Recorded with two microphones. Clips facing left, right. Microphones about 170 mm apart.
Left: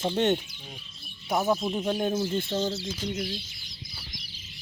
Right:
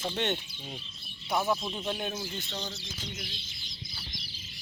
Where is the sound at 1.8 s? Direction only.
35° left (ahead or behind).